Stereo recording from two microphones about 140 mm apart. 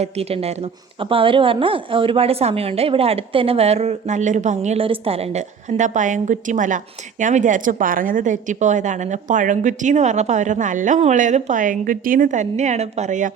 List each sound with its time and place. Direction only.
0.0 s a woman's voice: 45° right (ahead or behind)